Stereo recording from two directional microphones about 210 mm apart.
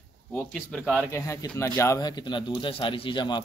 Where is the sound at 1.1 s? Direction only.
15° left (ahead or behind).